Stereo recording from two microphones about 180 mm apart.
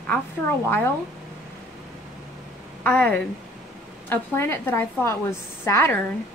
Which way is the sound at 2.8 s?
10° left (ahead or behind).